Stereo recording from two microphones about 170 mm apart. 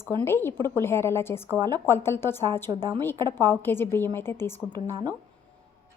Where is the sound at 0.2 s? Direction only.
15° left (ahead or behind).